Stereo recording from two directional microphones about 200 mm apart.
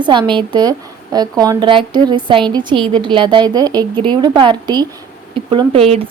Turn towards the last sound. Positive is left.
turn(degrees=-30)  # may be behind; listen again after turning